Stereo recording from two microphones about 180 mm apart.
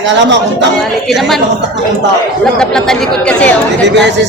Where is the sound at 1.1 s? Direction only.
Centre (ahead or behind).